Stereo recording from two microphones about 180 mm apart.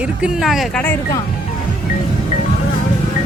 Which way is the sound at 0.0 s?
5° right (ahead or behind).